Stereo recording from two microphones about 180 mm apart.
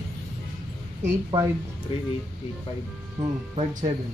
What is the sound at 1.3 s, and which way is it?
Speech, 15° right (ahead or behind).